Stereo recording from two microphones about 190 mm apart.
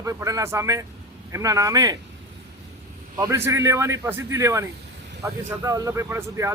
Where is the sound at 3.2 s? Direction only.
15° right (ahead or behind).